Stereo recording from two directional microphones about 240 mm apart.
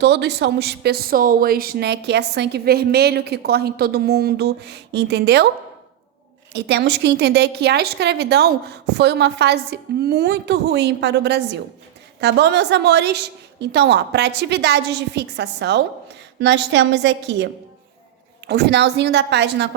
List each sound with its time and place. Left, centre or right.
0.0 s speech: right
6.5 s speech: right